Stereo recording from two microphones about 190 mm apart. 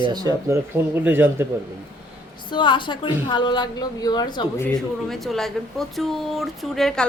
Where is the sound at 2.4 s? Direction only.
25° left (ahead or behind).